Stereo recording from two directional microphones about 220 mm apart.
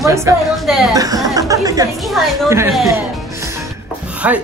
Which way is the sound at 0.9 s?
15° right (ahead or behind).